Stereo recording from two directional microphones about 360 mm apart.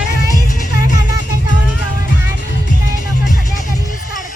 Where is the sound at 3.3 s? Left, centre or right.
Left.